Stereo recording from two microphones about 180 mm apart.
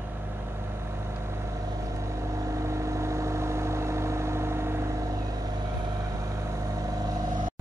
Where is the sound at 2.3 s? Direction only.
15° right (ahead or behind).